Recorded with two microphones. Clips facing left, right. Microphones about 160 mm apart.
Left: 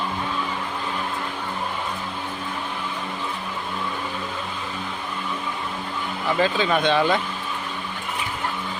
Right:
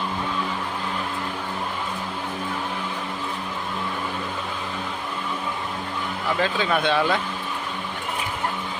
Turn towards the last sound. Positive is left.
turn(degrees=0)  # may be behind; listen again after turning